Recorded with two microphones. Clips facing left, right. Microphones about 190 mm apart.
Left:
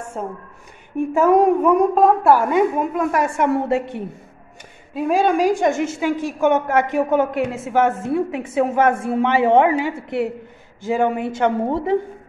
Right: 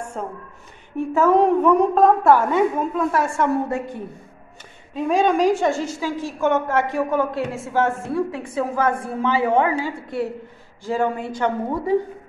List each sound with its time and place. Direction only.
0.2 s a woman's voice: 5° left (ahead or behind); by 3.7 s 20° left (ahead or behind)
4.9 s a woman's voice: 10° left (ahead or behind)